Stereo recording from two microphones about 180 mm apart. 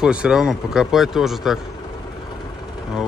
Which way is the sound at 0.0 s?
5° right (ahead or behind).